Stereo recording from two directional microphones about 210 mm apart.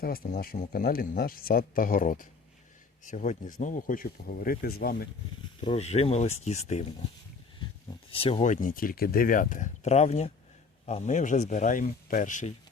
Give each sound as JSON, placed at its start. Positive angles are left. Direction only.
{"t": 0.0, "sound": "speech", "side_deg": 45}
{"t": 5.5, "sound": "speech", "side_deg": 30}
{"t": 8.1, "sound": "speech", "side_deg": 25}